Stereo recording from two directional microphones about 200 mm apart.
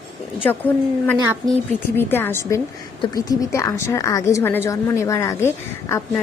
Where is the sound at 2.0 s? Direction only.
10° left (ahead or behind).